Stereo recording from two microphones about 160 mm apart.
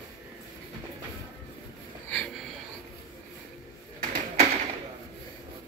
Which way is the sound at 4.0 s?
55° right (ahead or behind).